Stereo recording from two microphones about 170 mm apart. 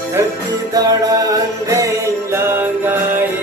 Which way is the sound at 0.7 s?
20° right (ahead or behind).